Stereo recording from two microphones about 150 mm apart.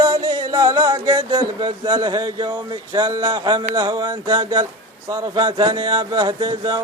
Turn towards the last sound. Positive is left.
turn(degrees=-30)  # may be behind; listen again after turning